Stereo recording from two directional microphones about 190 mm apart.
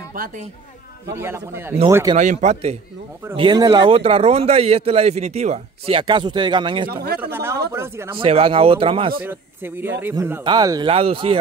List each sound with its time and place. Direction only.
1.1 s a man's voice: 10° right (ahead or behind)
2.1 s speech: 40° right (ahead or behind)
3.3 s speech: 20° right (ahead or behind)
6.9 s speech: 55° right (ahead or behind)
7.2 s a man's voice: 10° right (ahead or behind)
8.1 s speech: 30° right (ahead or behind)
9.2 s a man's voice: 10° right (ahead or behind); by 11.3 s 30° right (ahead or behind)